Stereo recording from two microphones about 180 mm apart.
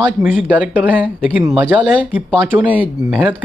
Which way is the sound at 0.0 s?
5° right (ahead or behind).